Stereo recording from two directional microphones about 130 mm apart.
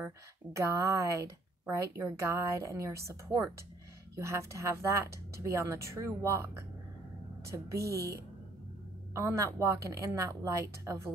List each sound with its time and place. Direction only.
0.0 s speech: 20° right (ahead or behind)